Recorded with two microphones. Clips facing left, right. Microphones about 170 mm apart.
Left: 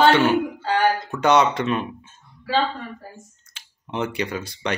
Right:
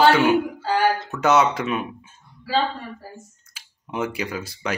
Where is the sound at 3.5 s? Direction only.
5° right (ahead or behind).